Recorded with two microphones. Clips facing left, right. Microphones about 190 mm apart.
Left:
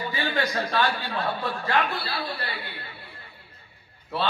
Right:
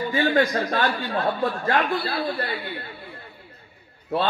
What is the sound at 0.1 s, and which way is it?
A man's voice, 50° right (ahead or behind).